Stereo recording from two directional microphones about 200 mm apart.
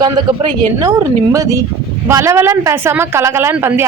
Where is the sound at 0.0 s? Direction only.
20° right (ahead or behind).